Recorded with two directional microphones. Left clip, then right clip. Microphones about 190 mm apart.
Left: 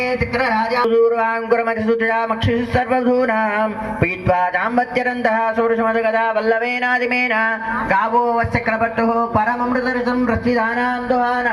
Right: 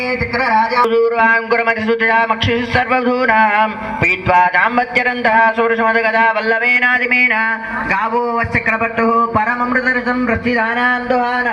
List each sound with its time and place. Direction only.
1.1 s a man's voice: 45° left (ahead or behind); by 9.9 s 10° left (ahead or behind)